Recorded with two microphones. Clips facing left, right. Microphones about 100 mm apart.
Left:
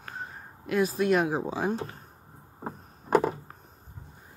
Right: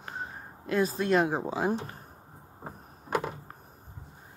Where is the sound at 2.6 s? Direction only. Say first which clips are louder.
Left 5 dB; 30° left (ahead or behind).